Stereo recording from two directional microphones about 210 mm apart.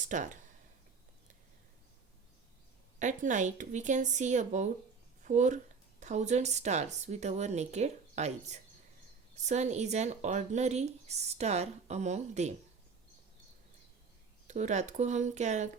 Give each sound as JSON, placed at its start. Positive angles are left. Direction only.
{"t": 0.0, "sound": "speech", "side_deg": -35}
{"t": 3.0, "sound": "speech", "side_deg": -35}
{"t": 14.4, "sound": "speech", "side_deg": -35}